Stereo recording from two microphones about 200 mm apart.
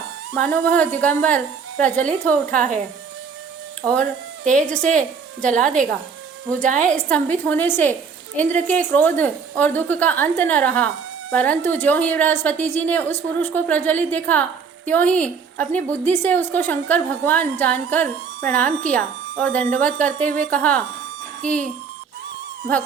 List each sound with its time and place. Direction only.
0.4 s a woman's voice: 5° left (ahead or behind)
2.5 s a woman's voice: 40° right (ahead or behind)
4.8 s a woman's voice: 40° right (ahead or behind)
6.9 s a woman's voice: 5° left (ahead or behind)